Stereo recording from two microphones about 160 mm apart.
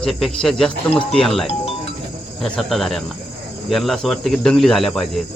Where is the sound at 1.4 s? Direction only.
40° left (ahead or behind).